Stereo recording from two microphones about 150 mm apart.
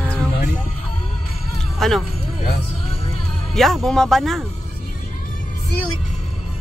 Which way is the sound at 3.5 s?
Centre (ahead or behind).